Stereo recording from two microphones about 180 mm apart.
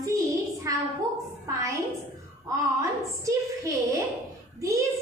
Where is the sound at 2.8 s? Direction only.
15° right (ahead or behind).